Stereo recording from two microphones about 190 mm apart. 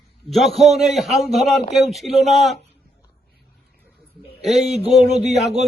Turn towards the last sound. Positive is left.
turn(degrees=-35)  # may be behind; listen again after turning